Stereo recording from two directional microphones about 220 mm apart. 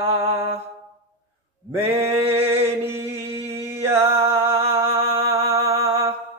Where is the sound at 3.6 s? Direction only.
10° right (ahead or behind).